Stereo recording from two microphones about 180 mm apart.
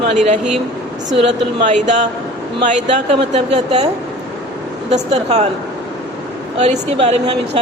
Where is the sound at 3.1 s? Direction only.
35° right (ahead or behind).